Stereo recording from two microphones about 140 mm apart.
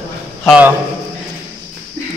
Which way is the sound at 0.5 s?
10° right (ahead or behind).